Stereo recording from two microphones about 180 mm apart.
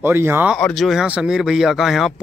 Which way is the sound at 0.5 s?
5° left (ahead or behind).